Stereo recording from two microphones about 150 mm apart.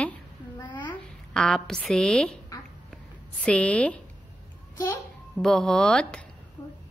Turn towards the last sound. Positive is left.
turn(degrees=30)  # may be behind; listen again after turning